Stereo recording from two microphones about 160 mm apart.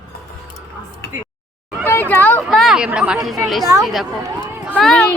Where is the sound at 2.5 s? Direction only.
Centre (ahead or behind).